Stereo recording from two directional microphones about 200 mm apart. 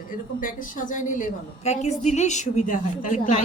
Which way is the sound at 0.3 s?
40° left (ahead or behind).